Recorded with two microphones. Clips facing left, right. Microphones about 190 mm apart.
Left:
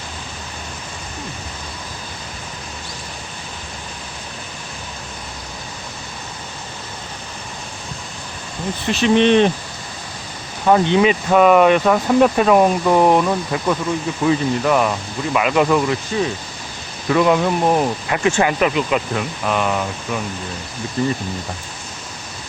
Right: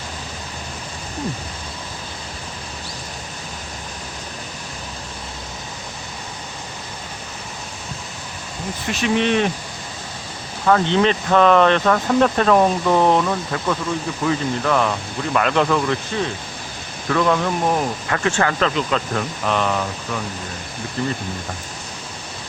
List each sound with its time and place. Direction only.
8.9 s speech: 30° left (ahead or behind)
10.7 s speech: 15° left (ahead or behind)